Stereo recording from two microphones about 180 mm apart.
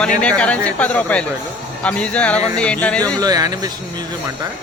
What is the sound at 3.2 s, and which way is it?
Speech, 20° right (ahead or behind).